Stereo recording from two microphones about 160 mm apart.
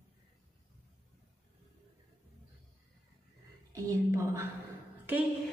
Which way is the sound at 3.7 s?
20° right (ahead or behind).